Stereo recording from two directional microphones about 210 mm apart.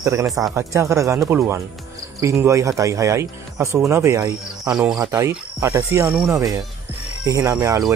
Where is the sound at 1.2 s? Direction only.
Centre (ahead or behind).